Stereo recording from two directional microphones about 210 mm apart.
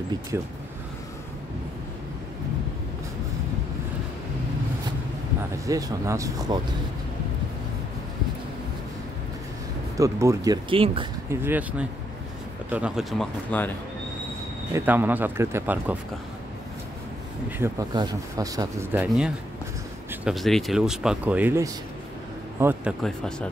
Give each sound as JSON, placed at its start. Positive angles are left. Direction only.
{"t": 0.3, "sound": "speech", "side_deg": -15}
{"t": 5.7, "sound": "speech", "side_deg": -15}
{"t": 9.9, "sound": "speech", "side_deg": -15}
{"t": 11.2, "sound": "speech", "side_deg": -10}
{"t": 14.7, "sound": "speech", "side_deg": -10}
{"t": 17.5, "sound": "speech", "side_deg": -15}
{"t": 22.6, "sound": "a sound", "side_deg": -10}
{"t": 23.0, "sound": "speech", "side_deg": 5}